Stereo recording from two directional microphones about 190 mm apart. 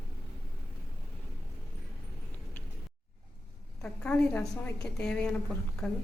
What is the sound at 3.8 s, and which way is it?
A woman's voice, 5° left (ahead or behind).